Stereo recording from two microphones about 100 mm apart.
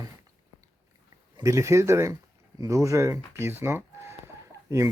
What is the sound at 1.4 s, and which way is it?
Speech, 30° right (ahead or behind).